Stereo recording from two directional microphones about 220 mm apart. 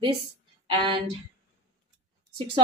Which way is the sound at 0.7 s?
20° right (ahead or behind).